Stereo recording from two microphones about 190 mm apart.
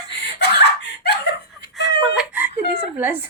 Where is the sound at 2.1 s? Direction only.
10° right (ahead or behind).